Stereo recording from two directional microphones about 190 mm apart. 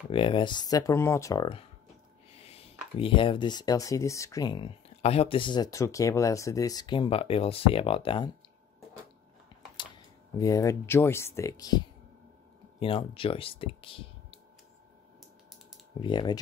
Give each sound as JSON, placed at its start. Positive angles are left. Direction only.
{"t": 0.1, "sound": "speech", "side_deg": 25}
{"t": 10.3, "sound": "speech", "side_deg": 20}
{"t": 16.0, "sound": "speech", "side_deg": 25}